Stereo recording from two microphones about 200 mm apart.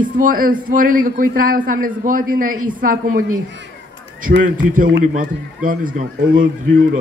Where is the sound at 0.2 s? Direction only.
45° right (ahead or behind).